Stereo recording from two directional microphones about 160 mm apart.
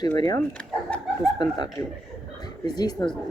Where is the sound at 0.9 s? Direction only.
5° left (ahead or behind).